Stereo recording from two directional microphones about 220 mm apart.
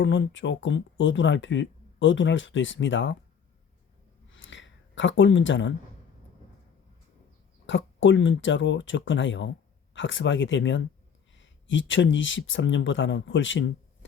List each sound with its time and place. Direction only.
0.0 s speech: 55° left (ahead or behind)
4.3 s a sound: 60° left (ahead or behind)
7.7 s speech: 60° left (ahead or behind)